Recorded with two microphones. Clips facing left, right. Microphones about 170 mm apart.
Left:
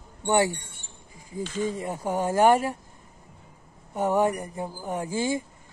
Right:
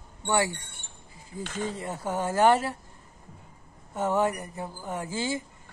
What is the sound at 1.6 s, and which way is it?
Speech, 15° left (ahead or behind).